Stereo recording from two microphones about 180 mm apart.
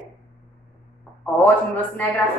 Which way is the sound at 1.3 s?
10° left (ahead or behind).